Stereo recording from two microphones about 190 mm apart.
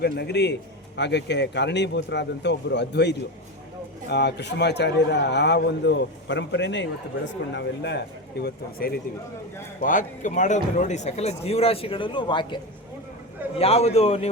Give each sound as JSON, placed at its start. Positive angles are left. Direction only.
{"t": 0.0, "sound": "a man's voice", "side_deg": 60}
{"t": 9.8, "sound": "speech", "side_deg": 45}
{"t": 13.6, "sound": "speech", "side_deg": 30}